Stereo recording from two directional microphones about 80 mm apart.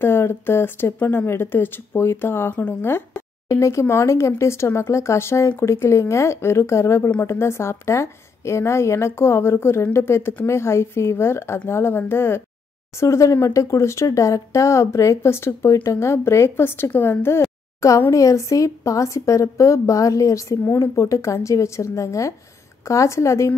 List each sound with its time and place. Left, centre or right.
0.0 s speech: left
3.4 s speech: left
18.1 s speech: left